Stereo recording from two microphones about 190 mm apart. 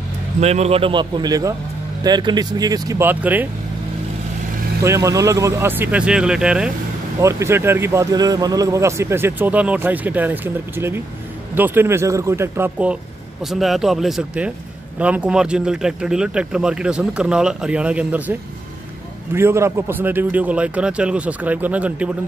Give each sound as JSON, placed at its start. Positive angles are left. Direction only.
{"t": 0.4, "sound": "speech", "side_deg": -35}
{"t": 4.8, "sound": "speech", "side_deg": -15}
{"t": 7.2, "sound": "speech", "side_deg": -15}
{"t": 19.3, "sound": "speech", "side_deg": -15}